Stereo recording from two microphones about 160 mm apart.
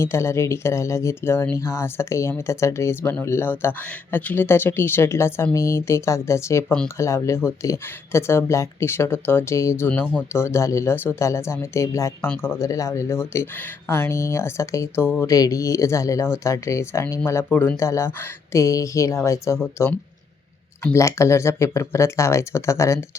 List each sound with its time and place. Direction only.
0.0 s speech: 15° left (ahead or behind)
20.8 s speech: 20° left (ahead or behind)